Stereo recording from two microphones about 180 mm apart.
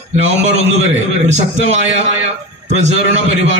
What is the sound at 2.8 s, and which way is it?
Speech, 40° right (ahead or behind).